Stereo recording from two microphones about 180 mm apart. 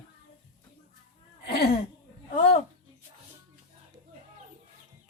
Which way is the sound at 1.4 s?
60° left (ahead or behind).